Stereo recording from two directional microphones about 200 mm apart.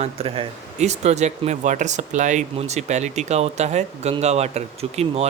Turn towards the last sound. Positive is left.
turn(degrees=-30)  # may be behind; listen again after turning